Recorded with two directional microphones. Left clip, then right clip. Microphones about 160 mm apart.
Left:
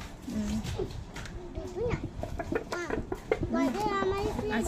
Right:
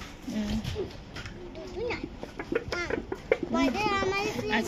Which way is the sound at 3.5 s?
30° left (ahead or behind).